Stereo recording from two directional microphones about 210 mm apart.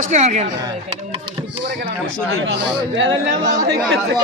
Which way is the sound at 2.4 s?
60° right (ahead or behind).